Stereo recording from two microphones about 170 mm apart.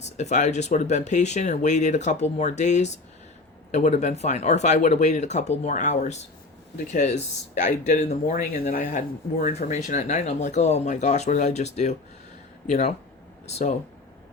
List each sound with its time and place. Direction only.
0.0 s speech: 45° left (ahead or behind)
8.3 s speech: 50° left (ahead or behind)